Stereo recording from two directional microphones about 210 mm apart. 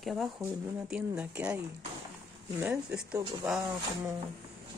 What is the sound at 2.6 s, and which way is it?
Speech, 5° right (ahead or behind).